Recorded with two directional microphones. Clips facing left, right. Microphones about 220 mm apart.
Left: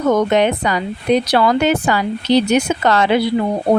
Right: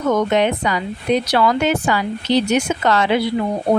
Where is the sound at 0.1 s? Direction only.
40° left (ahead or behind).